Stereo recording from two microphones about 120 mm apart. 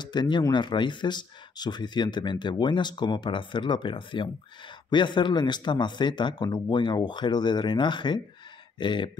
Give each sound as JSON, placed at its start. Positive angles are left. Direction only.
{"t": 0.0, "sound": "speech", "side_deg": 40}